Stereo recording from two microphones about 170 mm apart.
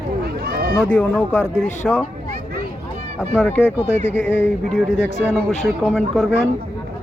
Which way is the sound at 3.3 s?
10° left (ahead or behind).